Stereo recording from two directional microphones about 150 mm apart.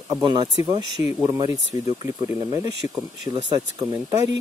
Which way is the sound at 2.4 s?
20° right (ahead or behind).